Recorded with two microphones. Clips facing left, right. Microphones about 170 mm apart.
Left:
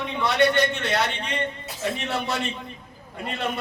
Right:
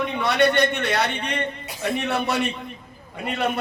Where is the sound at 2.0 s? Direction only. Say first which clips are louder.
Right 6 dB; 65° right (ahead or behind).